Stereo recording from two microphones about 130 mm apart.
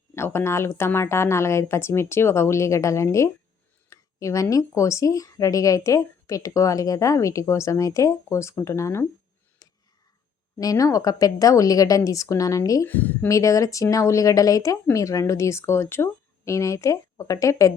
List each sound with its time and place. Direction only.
0.2 s speech: 20° left (ahead or behind)
9.6 s a sound: 25° left (ahead or behind)
10.6 s speech: 30° left (ahead or behind)
12.9 s a woman's voice: 15° left (ahead or behind)
13.2 s speech: 25° left (ahead or behind)